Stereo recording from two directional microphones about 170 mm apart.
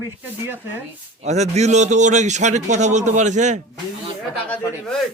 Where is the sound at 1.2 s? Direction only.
40° right (ahead or behind).